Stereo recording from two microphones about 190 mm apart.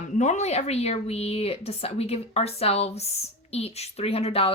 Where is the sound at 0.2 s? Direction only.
35° left (ahead or behind).